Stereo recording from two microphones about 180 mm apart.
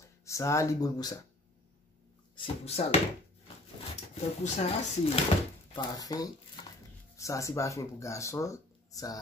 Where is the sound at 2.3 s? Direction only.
35° left (ahead or behind).